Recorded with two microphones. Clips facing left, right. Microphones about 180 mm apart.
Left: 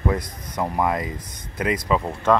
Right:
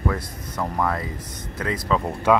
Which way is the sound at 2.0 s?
Centre (ahead or behind).